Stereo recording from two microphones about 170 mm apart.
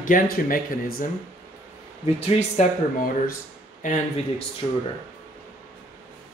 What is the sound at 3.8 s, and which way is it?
Speech, 50° left (ahead or behind).